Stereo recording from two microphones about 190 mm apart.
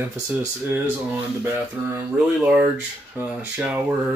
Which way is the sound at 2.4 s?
10° right (ahead or behind).